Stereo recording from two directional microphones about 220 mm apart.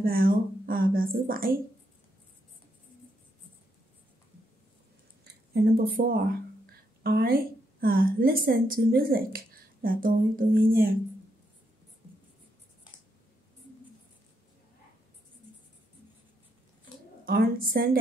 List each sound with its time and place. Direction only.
0.0 s a woman's voice: 40° right (ahead or behind)
5.5 s a woman's voice: 40° right (ahead or behind)
17.2 s a woman's voice: 40° right (ahead or behind)